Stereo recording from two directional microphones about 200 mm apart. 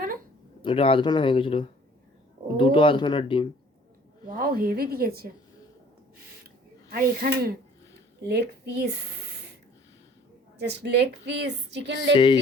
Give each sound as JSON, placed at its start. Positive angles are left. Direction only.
{"t": 0.6, "sound": "speech", "side_deg": 25}
{"t": 4.3, "sound": "a woman's voice", "side_deg": -45}
{"t": 6.9, "sound": "a woman's voice", "side_deg": -50}
{"t": 10.6, "sound": "speech", "side_deg": -55}
{"t": 12.1, "sound": "speech", "side_deg": 20}